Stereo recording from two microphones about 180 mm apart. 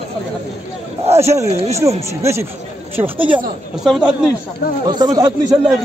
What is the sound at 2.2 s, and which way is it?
Speech, 15° right (ahead or behind).